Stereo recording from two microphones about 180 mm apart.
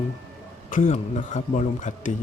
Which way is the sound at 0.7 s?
45° left (ahead or behind).